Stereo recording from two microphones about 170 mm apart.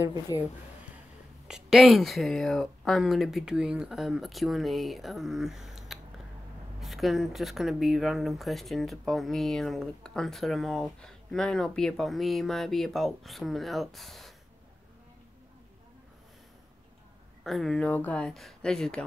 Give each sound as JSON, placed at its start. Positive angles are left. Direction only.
{"t": 0.3, "sound": "speech", "side_deg": 25}
{"t": 1.5, "sound": "speech", "side_deg": 0}
{"t": 17.4, "sound": "speech", "side_deg": 0}